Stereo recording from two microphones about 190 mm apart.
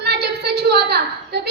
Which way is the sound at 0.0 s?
55° right (ahead or behind).